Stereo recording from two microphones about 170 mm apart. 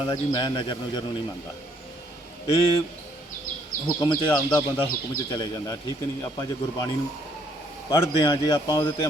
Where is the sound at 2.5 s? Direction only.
35° left (ahead or behind).